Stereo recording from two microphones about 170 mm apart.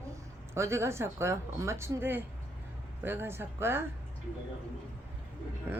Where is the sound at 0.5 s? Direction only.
15° right (ahead or behind).